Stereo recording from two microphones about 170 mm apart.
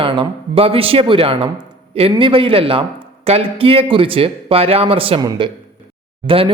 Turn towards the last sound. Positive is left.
turn(degrees=-30)  # may be behind; listen again after turning